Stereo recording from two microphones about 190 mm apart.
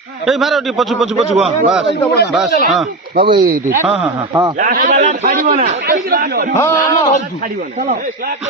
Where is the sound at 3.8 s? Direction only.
5° right (ahead or behind).